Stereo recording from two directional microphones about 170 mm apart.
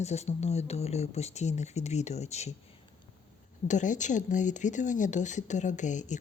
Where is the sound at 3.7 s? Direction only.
45° left (ahead or behind).